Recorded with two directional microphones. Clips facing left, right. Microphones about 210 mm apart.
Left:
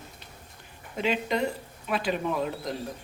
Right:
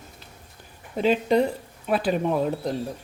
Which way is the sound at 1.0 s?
35° right (ahead or behind).